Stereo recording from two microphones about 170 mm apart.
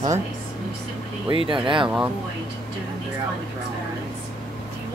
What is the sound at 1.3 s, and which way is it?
Speech, 30° right (ahead or behind).